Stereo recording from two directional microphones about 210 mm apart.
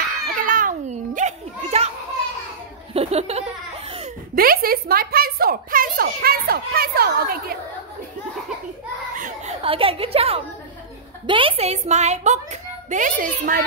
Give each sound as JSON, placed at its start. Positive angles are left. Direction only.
{"t": 0.5, "sound": "children playing", "side_deg": -40}
{"t": 2.9, "sound": "laughter", "side_deg": -30}
{"t": 4.4, "sound": "speech", "side_deg": -45}
{"t": 9.1, "sound": "a sound", "side_deg": -40}
{"t": 9.7, "sound": "a woman's voice", "side_deg": -25}